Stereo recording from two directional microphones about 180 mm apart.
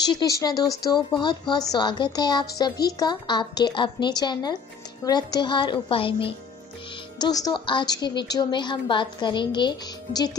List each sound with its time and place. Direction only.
0.1 s a woman's voice: 20° left (ahead or behind)